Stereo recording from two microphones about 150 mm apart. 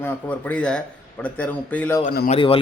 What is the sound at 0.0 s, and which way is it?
A man's voice, 10° left (ahead or behind).